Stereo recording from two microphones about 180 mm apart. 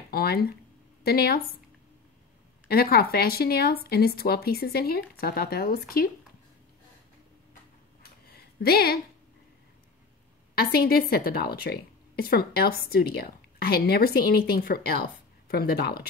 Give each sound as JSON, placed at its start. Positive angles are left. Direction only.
{"t": 0.1, "sound": "a woman's voice", "side_deg": 60}
{"t": 2.7, "sound": "a woman's voice", "side_deg": 60}
{"t": 8.0, "sound": "a sound", "side_deg": 60}
{"t": 10.5, "sound": "a woman's voice", "side_deg": 60}